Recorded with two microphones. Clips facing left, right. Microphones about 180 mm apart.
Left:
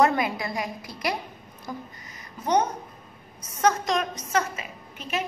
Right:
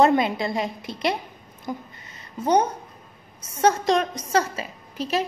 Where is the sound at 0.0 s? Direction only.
25° right (ahead or behind).